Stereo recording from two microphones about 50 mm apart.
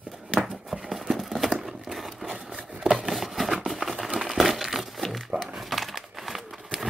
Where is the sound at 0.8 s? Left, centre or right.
Centre.